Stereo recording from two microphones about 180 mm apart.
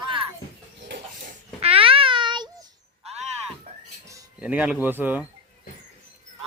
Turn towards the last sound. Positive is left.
turn(degrees=-10)  # may be behind; listen again after turning